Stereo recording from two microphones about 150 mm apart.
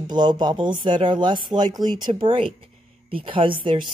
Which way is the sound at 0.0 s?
30° right (ahead or behind).